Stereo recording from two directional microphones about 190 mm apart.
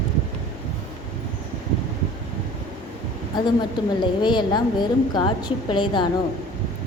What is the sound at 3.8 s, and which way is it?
A woman's voice, 20° left (ahead or behind).